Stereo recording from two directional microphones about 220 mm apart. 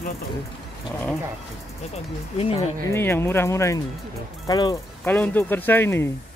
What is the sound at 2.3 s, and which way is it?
Speech, 25° left (ahead or behind).